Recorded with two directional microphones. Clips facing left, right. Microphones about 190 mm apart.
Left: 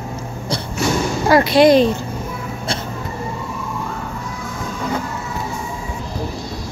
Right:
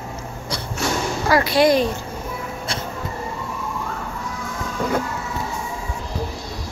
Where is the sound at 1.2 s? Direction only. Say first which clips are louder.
Left 5 dB; 25° left (ahead or behind).